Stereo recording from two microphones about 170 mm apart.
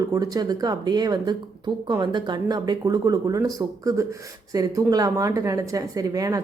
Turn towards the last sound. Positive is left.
turn(degrees=-20)  # may be behind; listen again after turning